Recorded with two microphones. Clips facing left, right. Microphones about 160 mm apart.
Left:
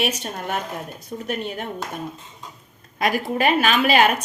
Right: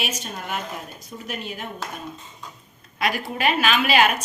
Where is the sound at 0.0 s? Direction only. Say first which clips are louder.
Left 5 dB; 60° left (ahead or behind).